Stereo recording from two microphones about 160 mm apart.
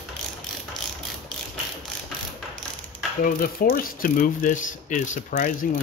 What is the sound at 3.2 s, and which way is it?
Speech, 65° left (ahead or behind).